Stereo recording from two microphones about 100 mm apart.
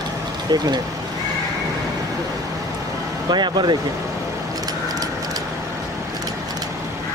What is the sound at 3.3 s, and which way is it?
Speech, 45° right (ahead or behind).